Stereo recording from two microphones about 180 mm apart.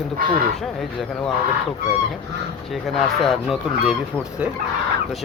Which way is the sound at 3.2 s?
Centre (ahead or behind).